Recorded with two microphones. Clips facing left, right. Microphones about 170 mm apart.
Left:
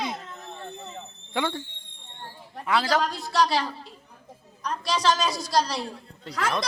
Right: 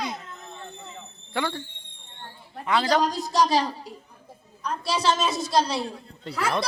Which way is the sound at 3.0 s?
20° right (ahead or behind).